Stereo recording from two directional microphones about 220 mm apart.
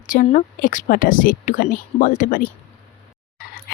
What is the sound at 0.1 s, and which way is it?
Speech, 35° left (ahead or behind).